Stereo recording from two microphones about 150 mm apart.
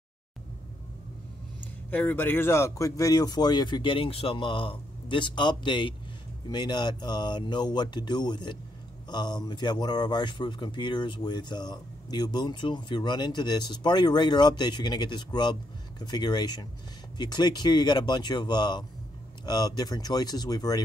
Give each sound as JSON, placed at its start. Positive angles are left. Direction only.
{"t": 1.9, "sound": "speech", "side_deg": 10}